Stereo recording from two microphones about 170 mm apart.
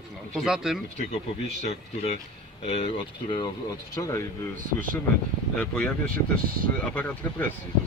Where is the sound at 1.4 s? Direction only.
40° left (ahead or behind).